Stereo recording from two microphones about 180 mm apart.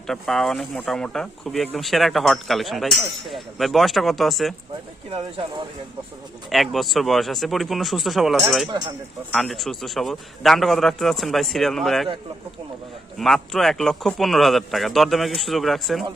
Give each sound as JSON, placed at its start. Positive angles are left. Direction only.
{"t": 0.1, "sound": "speech", "side_deg": 0}
{"t": 5.1, "sound": "speech", "side_deg": -30}
{"t": 6.5, "sound": "speech", "side_deg": 0}
{"t": 13.1, "sound": "speech", "side_deg": 0}